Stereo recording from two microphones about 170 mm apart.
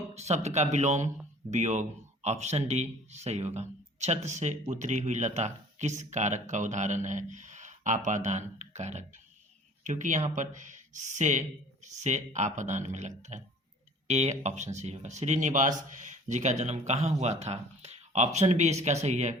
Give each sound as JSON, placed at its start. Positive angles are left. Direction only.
{"t": 0.1, "sound": "speech", "side_deg": -40}